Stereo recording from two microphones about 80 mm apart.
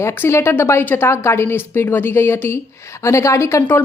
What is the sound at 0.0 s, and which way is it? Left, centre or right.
Speech, left.